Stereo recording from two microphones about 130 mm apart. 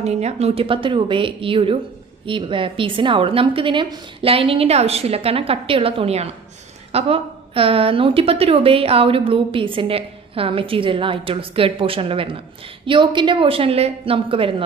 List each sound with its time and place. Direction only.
0.0 s a woman's voice: 55° right (ahead or behind)